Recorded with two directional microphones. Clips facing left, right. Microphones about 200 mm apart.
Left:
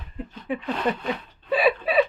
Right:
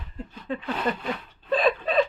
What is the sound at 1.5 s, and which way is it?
Speech, 10° left (ahead or behind).